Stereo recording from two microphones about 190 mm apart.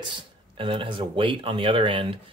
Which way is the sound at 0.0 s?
25° right (ahead or behind).